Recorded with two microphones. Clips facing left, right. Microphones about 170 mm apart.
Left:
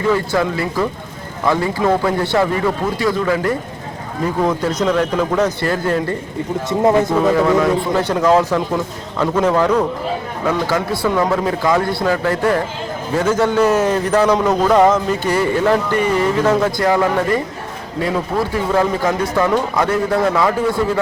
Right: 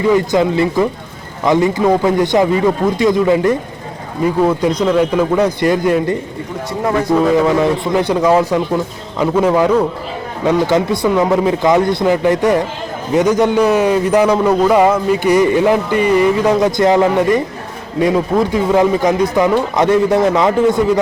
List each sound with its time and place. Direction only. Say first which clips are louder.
0.1 s a man's voice: right 4 dB; 20° right (ahead or behind)
6.7 s speech: left 3 dB; 25° left (ahead or behind)
7.4 s a man's voice: right 1 dB; 15° right (ahead or behind)
10.4 s a man's voice: right 6 dB; 20° right (ahead or behind)